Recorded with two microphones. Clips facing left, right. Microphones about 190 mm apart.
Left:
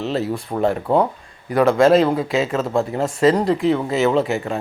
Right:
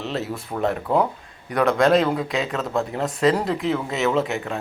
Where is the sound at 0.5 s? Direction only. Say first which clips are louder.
Left 4 dB; 25° left (ahead or behind).